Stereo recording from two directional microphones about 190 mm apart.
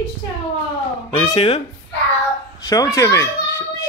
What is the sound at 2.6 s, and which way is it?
A child's voice, 20° left (ahead or behind).